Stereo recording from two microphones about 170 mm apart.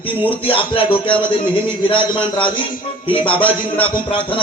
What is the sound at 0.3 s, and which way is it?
A man's voice, 30° left (ahead or behind).